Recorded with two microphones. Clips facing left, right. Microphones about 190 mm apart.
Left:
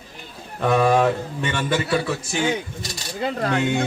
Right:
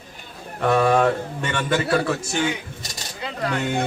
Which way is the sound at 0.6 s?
Centre (ahead or behind).